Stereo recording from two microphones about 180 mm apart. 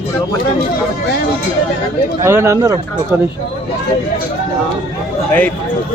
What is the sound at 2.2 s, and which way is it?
Speech, 15° right (ahead or behind).